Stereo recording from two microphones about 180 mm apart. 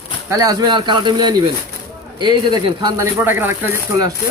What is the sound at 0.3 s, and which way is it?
Speech, 20° right (ahead or behind).